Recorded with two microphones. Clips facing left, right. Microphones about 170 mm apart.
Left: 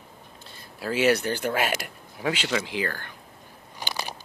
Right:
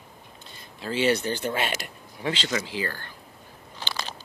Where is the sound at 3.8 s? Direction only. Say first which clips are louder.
Left 1 dB; 15° left (ahead or behind).